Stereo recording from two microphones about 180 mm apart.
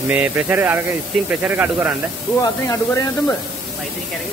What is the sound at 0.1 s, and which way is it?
Speech, 10° right (ahead or behind).